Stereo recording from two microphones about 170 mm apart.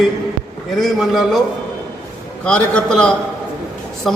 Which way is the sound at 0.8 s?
Centre (ahead or behind).